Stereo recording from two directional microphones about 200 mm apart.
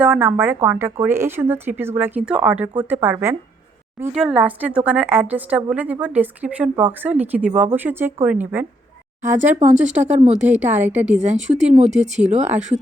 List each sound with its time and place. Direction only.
0.0 s speech: 10° right (ahead or behind)
9.7 s speech: 5° right (ahead or behind)
10.0 s speech: 35° right (ahead or behind)
10.3 s speech: 5° right (ahead or behind)
11.2 s speech: 35° right (ahead or behind)